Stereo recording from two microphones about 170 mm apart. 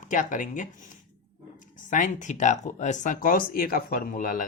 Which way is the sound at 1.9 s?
50° left (ahead or behind).